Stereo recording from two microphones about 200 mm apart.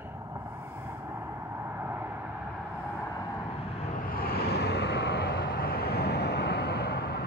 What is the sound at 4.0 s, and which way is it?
Vehicle, 45° left (ahead or behind).